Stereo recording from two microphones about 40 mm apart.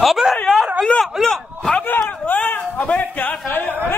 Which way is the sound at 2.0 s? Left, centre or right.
Left.